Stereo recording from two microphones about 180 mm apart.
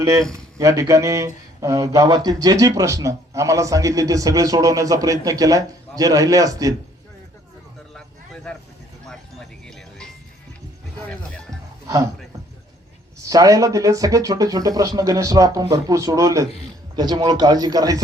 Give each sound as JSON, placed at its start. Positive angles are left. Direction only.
{"t": 0.0, "sound": "speech", "side_deg": -15}
{"t": 9.0, "sound": "music", "side_deg": 5}
{"t": 11.1, "sound": "music", "side_deg": 5}
{"t": 13.2, "sound": "speech", "side_deg": -20}